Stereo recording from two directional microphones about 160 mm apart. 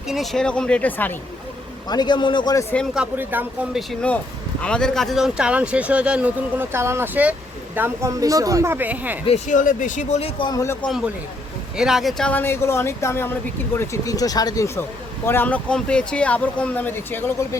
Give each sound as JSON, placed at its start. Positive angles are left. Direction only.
{"t": 0.1, "sound": "speech", "side_deg": 0}
{"t": 1.9, "sound": "speech", "side_deg": 25}
{"t": 2.9, "sound": "speech", "side_deg": -10}
{"t": 4.6, "sound": "speech", "side_deg": 5}
{"t": 9.5, "sound": "speech", "side_deg": 55}
{"t": 10.8, "sound": "speech", "side_deg": -5}